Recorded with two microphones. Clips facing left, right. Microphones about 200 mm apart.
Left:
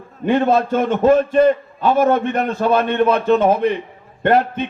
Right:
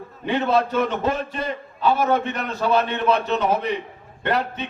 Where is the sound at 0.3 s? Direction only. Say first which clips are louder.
Left 5 dB; 50° left (ahead or behind).